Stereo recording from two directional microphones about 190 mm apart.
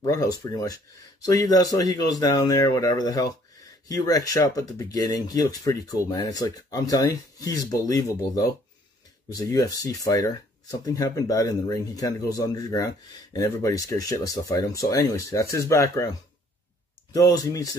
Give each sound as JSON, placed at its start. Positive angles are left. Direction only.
{"t": 0.0, "sound": "speech", "side_deg": 20}